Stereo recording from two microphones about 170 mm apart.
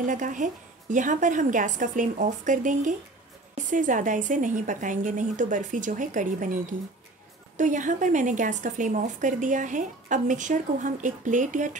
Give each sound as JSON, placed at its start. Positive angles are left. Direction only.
{"t": 0.0, "sound": "a woman's voice", "side_deg": -50}